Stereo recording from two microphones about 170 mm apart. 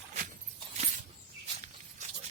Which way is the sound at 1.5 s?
45° right (ahead or behind).